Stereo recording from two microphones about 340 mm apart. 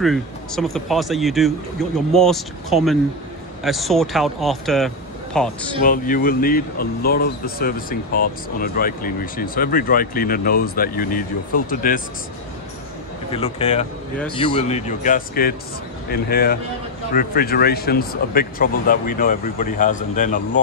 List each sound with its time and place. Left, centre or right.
0.0 s speech: centre
5.8 s speech: left
13.3 s speech: centre